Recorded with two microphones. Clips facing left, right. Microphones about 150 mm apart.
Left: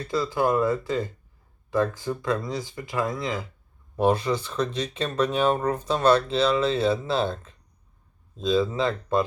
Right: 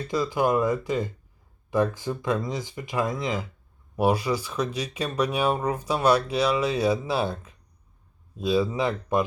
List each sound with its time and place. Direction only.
0.0 s speech: 20° right (ahead or behind)